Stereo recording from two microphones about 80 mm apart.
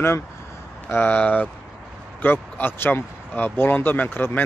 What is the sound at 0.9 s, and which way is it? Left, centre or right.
Speech, centre.